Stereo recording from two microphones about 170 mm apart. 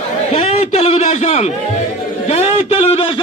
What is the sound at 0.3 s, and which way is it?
A man's voice, 35° left (ahead or behind).